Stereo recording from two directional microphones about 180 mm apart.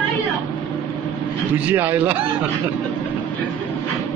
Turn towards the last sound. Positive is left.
turn(degrees=-10)  # may be behind; listen again after turning